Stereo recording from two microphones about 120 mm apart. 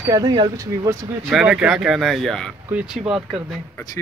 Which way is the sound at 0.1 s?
35° right (ahead or behind).